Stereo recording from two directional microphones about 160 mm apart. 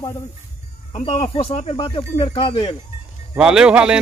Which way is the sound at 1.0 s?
35° left (ahead or behind).